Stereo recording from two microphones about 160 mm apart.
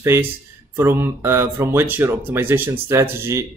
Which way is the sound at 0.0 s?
15° right (ahead or behind).